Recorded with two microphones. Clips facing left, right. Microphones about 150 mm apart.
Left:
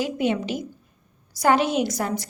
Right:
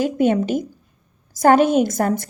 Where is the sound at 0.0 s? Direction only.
50° right (ahead or behind).